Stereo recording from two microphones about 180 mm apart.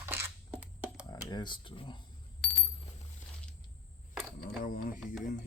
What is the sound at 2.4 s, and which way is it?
Coin, 5° left (ahead or behind).